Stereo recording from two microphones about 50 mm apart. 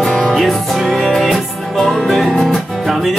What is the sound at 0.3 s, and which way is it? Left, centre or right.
Music, centre.